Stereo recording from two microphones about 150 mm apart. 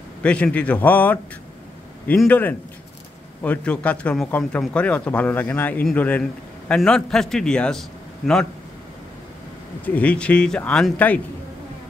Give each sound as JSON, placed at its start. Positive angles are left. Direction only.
{"t": 0.2, "sound": "a man's voice", "side_deg": 10}
{"t": 9.8, "sound": "speech", "side_deg": 10}